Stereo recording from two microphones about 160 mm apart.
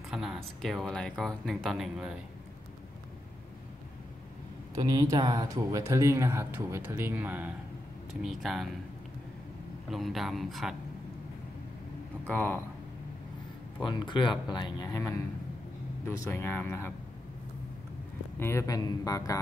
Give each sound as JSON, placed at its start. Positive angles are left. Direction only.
{"t": 0.1, "sound": "speech", "side_deg": -5}
{"t": 4.7, "sound": "speech", "side_deg": -20}
{"t": 9.8, "sound": "speech", "side_deg": 0}
{"t": 12.3, "sound": "speech", "side_deg": 10}
{"t": 13.8, "sound": "speech", "side_deg": 30}
{"t": 18.4, "sound": "speech", "side_deg": 15}